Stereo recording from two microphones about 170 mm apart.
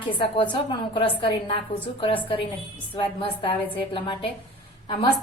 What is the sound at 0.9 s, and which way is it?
A woman's voice, 30° left (ahead or behind).